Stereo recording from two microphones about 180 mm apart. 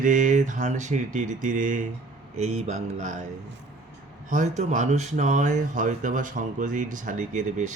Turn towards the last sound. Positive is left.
turn(degrees=-45)  # may be behind; listen again after turning